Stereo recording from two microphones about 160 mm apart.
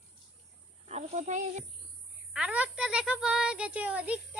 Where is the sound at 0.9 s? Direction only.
45° right (ahead or behind).